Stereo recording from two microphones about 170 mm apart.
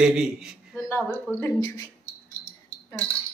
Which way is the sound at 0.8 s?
10° left (ahead or behind).